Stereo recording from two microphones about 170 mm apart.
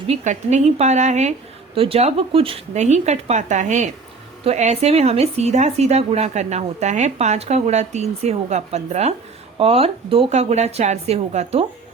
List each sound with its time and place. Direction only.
0.1 s speech: 40° right (ahead or behind)
1.7 s speech: 35° right (ahead or behind)